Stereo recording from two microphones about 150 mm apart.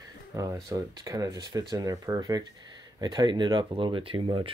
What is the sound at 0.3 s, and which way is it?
Speech, 20° right (ahead or behind).